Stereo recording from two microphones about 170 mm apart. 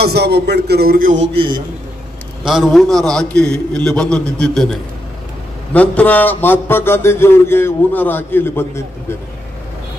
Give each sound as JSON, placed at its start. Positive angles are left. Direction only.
{"t": 0.0, "sound": "a man's voice", "side_deg": -75}
{"t": 1.3, "sound": "a man's voice", "side_deg": -30}
{"t": 2.4, "sound": "a man's voice", "side_deg": 0}
{"t": 5.7, "sound": "a man's voice", "side_deg": 10}